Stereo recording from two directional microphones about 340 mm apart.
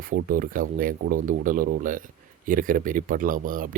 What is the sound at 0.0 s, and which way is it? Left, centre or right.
Speech, right.